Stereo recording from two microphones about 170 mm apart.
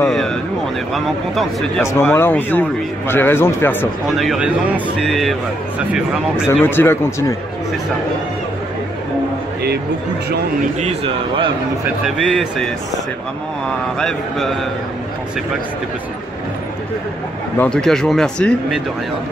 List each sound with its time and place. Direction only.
0.1 s a sound: centre (ahead or behind)
0.9 s speech: centre (ahead or behind)
1.9 s speech: 15° left (ahead or behind)
4.2 s speech: 5° right (ahead or behind)
6.6 s speech: 10° left (ahead or behind)
10.8 s a man's voice: 35° right (ahead or behind)
12.2 s speech: centre (ahead or behind)
13.9 s speech: centre (ahead or behind)
17.6 s speech: 5° left (ahead or behind)